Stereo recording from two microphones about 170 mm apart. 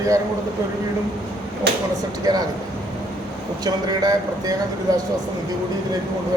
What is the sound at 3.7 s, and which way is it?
Speech, 20° right (ahead or behind).